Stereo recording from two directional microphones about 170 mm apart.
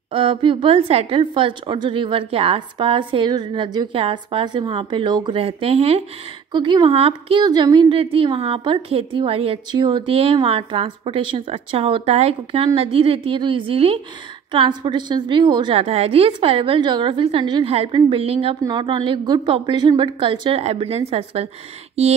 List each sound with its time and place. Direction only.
0.1 s a woman's voice: 30° right (ahead or behind)